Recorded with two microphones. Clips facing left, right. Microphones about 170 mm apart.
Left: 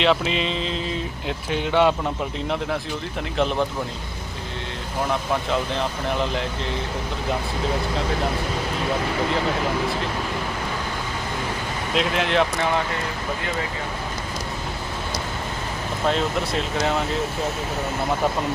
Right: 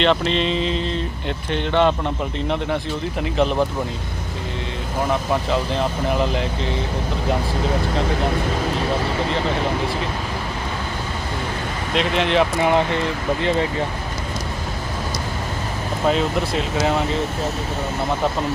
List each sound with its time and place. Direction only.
0.0 s speech: 5° left (ahead or behind)
3.2 s speech: centre (ahead or behind)
5.3 s speech: centre (ahead or behind)
11.9 s speech: centre (ahead or behind)
16.0 s speech: centre (ahead or behind)